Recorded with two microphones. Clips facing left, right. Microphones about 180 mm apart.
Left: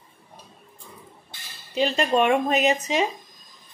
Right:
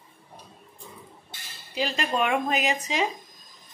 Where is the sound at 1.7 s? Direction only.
25° left (ahead or behind).